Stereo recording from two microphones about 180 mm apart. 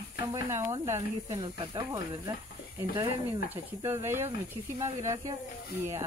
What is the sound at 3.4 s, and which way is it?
Speech, 15° right (ahead or behind).